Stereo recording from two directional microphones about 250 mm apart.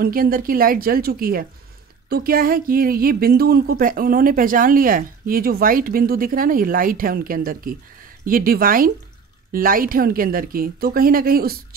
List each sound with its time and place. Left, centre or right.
0.0 s a woman's voice: right